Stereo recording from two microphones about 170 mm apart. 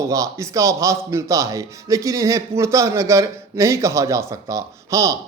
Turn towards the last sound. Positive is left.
turn(degrees=-20)  # may be behind; listen again after turning